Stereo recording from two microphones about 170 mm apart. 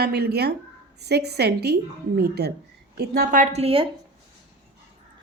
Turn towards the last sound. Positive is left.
turn(degrees=-35)  # may be behind; listen again after turning